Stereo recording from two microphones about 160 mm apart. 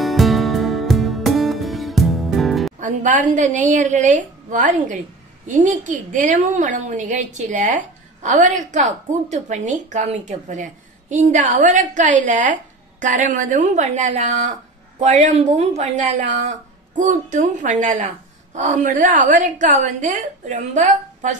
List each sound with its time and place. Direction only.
0.0 s music: centre (ahead or behind)
2.8 s a woman's voice: 55° right (ahead or behind)